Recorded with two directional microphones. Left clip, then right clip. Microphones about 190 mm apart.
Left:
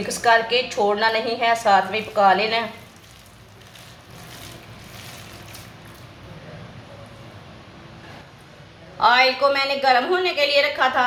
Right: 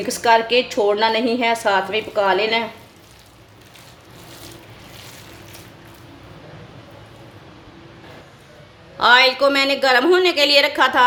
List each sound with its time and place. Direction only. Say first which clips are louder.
0.1 s a woman's voice: right 2 dB; 45° right (ahead or behind)
9.0 s a woman's voice: right 3 dB; 55° right (ahead or behind)